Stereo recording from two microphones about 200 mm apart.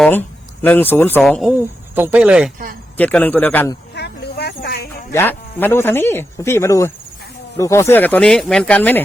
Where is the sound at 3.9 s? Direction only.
55° left (ahead or behind).